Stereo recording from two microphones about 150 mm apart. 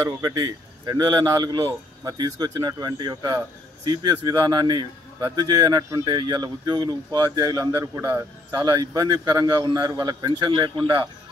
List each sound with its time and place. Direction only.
0.0 s a man's voice: 25° right (ahead or behind)